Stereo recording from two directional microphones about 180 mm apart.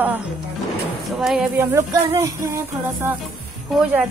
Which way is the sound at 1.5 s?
15° right (ahead or behind).